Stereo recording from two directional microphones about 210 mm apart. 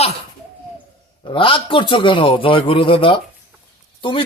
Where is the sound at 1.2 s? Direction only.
25° left (ahead or behind).